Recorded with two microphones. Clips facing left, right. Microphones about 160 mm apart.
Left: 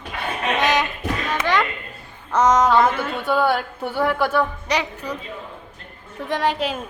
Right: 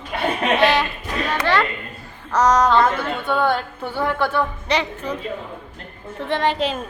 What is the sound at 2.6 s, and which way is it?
A child's voice, 10° left (ahead or behind).